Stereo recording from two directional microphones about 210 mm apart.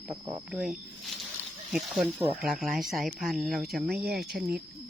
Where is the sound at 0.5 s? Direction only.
Centre (ahead or behind).